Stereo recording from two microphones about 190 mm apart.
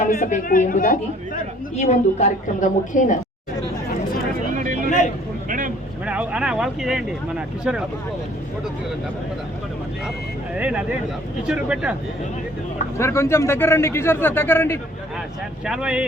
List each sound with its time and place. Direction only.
0.0 s a woman's voice: 40° left (ahead or behind)
5.5 s vehicle: 45° right (ahead or behind)
6.1 s speech: 5° right (ahead or behind)
10.5 s speech: 5° right (ahead or behind)
13.0 s speech: 15° left (ahead or behind)
15.6 s speech: 5° right (ahead or behind)